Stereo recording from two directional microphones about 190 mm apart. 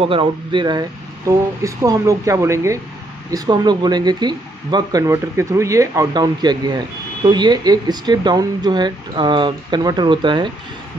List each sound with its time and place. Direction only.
0.0 s speech: 25° right (ahead or behind)